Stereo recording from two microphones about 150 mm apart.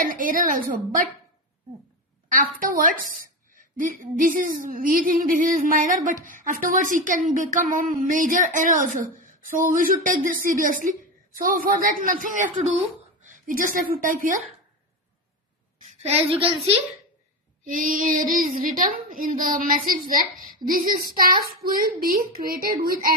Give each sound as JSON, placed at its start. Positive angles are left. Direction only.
{"t": 0.0, "sound": "a woman's voice", "side_deg": -65}
{"t": 2.2, "sound": "a woman's voice", "side_deg": -65}
{"t": 16.3, "sound": "a woman's voice", "side_deg": -40}
{"t": 17.6, "sound": "a woman's voice", "side_deg": -65}
{"t": 22.5, "sound": "speech", "side_deg": -85}